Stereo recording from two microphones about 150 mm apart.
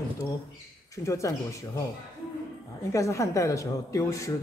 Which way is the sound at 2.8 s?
20° left (ahead or behind).